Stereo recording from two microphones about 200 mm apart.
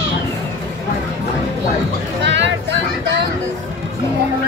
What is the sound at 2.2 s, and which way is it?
Music, 60° right (ahead or behind).